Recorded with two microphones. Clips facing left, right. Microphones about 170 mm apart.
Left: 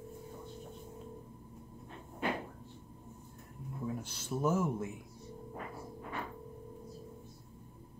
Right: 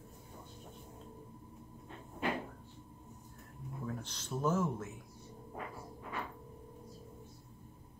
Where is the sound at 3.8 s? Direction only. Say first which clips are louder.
Left 3 dB; 10° left (ahead or behind).